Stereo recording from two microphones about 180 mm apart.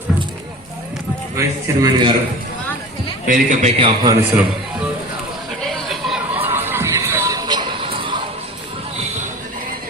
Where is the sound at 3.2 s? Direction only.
45° right (ahead or behind).